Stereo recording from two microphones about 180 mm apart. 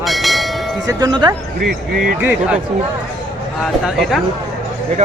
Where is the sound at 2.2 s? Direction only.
10° right (ahead or behind).